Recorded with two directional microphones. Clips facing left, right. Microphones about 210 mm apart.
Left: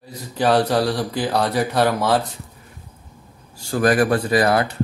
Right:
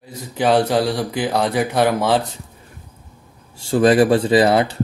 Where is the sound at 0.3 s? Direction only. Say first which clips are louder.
Right 1 dB; 15° right (ahead or behind).